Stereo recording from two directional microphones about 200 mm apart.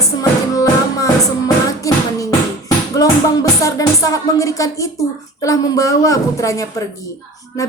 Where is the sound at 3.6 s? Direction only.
15° left (ahead or behind).